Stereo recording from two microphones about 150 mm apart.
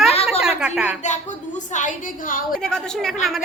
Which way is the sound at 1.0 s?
55° left (ahead or behind).